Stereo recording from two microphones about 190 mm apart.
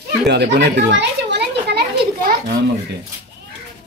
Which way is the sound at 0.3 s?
65° right (ahead or behind).